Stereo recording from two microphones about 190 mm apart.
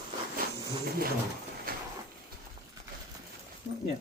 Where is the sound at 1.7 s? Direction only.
50° right (ahead or behind).